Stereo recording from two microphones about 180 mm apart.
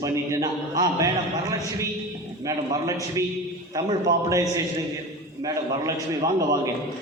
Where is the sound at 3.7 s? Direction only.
20° right (ahead or behind).